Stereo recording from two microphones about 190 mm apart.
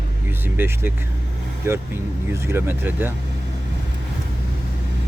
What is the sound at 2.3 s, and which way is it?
Speech, 15° right (ahead or behind).